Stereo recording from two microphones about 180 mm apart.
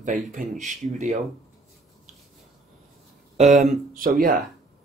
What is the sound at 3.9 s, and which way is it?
Speech, 50° right (ahead or behind).